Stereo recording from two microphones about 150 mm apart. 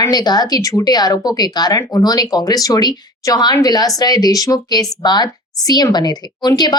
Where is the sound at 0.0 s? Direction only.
25° left (ahead or behind).